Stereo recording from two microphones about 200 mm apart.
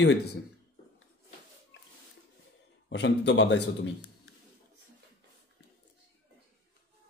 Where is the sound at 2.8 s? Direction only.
60° left (ahead or behind).